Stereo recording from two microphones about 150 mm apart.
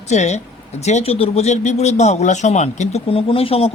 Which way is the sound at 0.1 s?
50° left (ahead or behind).